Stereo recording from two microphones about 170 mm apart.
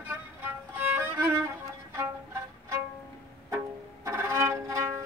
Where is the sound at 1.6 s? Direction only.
15° right (ahead or behind).